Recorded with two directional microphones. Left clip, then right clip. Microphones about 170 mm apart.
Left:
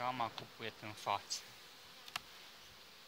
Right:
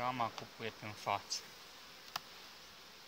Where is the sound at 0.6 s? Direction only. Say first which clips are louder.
Right 2 dB; 45° left (ahead or behind).